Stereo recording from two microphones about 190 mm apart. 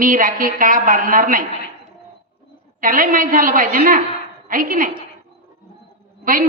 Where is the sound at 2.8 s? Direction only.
45° right (ahead or behind).